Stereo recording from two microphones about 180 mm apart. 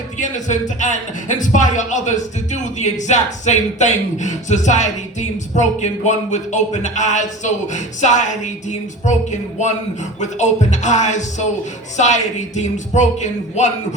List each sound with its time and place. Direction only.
0.2 s speech: 45° left (ahead or behind)